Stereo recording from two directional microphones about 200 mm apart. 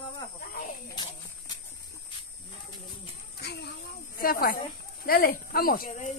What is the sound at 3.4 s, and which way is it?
Speech, 55° left (ahead or behind).